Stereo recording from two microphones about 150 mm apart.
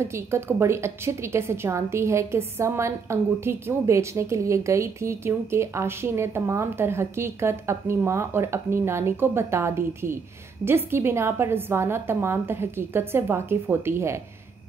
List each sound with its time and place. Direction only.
0.0 s a woman's voice: 20° right (ahead or behind)